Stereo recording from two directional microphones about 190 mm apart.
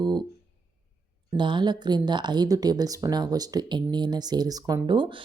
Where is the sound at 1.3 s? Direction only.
25° right (ahead or behind).